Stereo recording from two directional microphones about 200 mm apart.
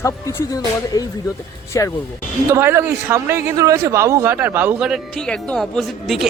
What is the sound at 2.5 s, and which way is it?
A man's voice, 10° right (ahead or behind).